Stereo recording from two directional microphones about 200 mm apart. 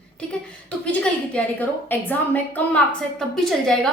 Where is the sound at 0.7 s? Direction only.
5° left (ahead or behind).